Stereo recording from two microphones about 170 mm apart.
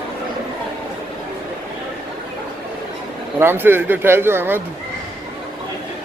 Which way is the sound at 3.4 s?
15° right (ahead or behind).